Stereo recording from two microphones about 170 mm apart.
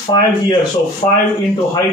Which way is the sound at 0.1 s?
25° left (ahead or behind).